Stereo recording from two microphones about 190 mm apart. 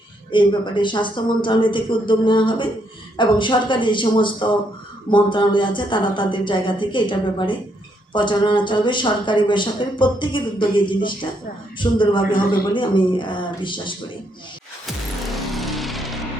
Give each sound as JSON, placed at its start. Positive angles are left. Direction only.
{"t": 0.3, "sound": "speech", "side_deg": 25}
{"t": 12.3, "sound": "a man's voice", "side_deg": 45}
{"t": 12.7, "sound": "speech", "side_deg": 25}
{"t": 15.4, "sound": "music", "side_deg": 0}